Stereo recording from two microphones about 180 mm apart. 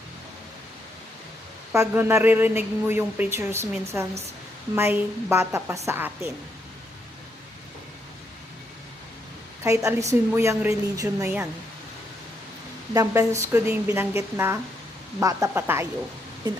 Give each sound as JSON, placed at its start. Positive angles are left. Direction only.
{"t": 1.7, "sound": "speech", "side_deg": -15}
{"t": 9.6, "sound": "speech", "side_deg": -15}
{"t": 12.9, "sound": "speech", "side_deg": -20}